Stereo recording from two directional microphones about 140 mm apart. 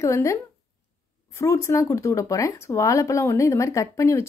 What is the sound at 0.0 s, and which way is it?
A woman's voice, 20° left (ahead or behind).